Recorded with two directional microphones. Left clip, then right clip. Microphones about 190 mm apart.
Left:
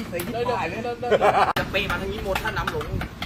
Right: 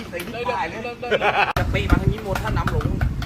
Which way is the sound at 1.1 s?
25° left (ahead or behind).